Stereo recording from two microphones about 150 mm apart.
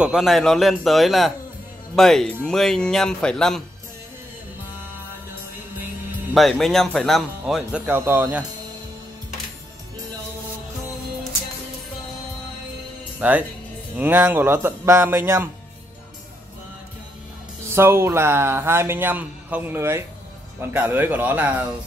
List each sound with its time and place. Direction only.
0.0 s speech: 5° right (ahead or behind)
6.3 s speech: centre (ahead or behind)
7.8 s a man's voice: 15° right (ahead or behind)
13.2 s a man's voice: 10° right (ahead or behind)
17.6 s a man's voice: 15° right (ahead or behind)